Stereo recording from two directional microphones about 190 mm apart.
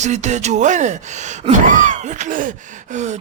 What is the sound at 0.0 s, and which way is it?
Speech, 40° right (ahead or behind).